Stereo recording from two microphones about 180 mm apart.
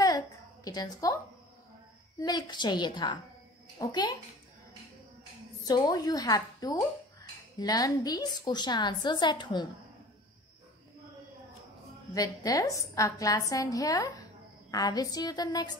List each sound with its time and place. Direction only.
0.7 s a woman's voice: 20° left (ahead or behind)
2.1 s a woman's voice: 20° left (ahead or behind)
5.7 s a woman's voice: 20° left (ahead or behind)
12.1 s a woman's voice: 20° left (ahead or behind)